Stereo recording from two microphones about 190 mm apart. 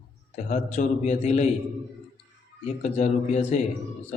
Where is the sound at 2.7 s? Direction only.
40° left (ahead or behind).